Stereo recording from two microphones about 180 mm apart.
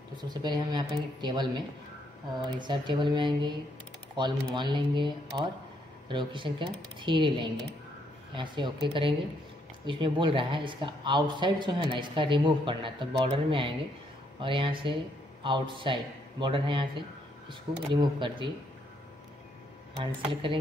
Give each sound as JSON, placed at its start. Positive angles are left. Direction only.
{"t": 0.1, "sound": "a woman's voice", "side_deg": -25}